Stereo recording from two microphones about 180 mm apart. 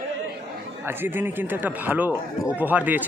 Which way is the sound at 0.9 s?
10° right (ahead or behind).